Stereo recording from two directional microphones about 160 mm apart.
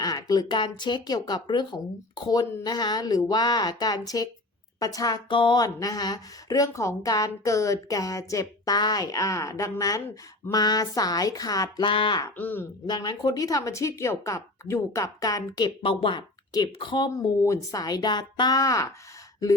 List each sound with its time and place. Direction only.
0.0 s speech: 25° left (ahead or behind)
12.2 s speech: 10° left (ahead or behind)
12.9 s speech: 25° left (ahead or behind)
17.1 s speech: 20° left (ahead or behind)